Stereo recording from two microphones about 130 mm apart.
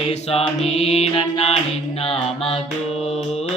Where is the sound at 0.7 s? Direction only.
50° left (ahead or behind).